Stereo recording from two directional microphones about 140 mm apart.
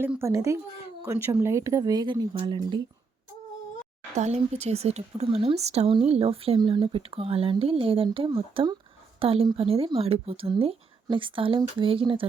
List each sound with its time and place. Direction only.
0.0 s speech: 15° right (ahead or behind); by 2.8 s 35° right (ahead or behind)
4.1 s speech: 55° right (ahead or behind)